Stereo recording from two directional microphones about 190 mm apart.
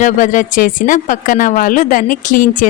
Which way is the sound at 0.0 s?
40° left (ahead or behind).